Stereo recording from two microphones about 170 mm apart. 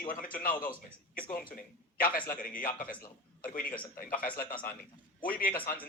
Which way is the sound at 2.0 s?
60° left (ahead or behind).